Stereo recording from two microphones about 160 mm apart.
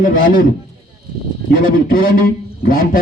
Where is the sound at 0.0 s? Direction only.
55° left (ahead or behind).